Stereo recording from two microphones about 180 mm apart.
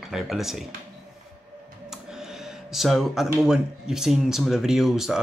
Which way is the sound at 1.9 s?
Centre (ahead or behind).